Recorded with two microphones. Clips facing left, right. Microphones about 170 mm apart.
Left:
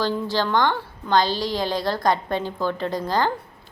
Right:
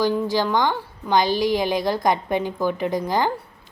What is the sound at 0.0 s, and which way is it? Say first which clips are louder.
A woman's voice: right 3 dB; 15° right (ahead or behind).